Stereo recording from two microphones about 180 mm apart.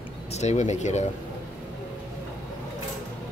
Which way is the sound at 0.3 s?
40° left (ahead or behind).